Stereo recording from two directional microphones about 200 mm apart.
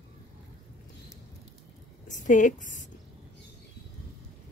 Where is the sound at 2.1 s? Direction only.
40° left (ahead or behind).